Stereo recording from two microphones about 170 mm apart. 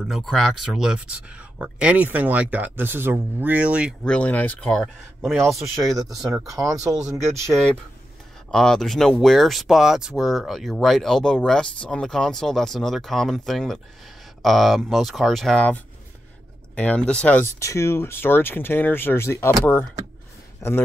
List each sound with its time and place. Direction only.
0.0 s speech: centre (ahead or behind)
4.0 s speech: 5° left (ahead or behind)
7.3 s speech: 15° right (ahead or behind)
8.5 s speech: 5° left (ahead or behind)